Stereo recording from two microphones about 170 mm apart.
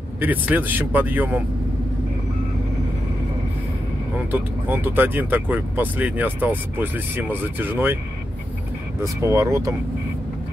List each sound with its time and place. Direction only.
0.2 s speech: 10° right (ahead or behind)
4.3 s speech: 10° right (ahead or behind)
9.0 s speech: 15° right (ahead or behind)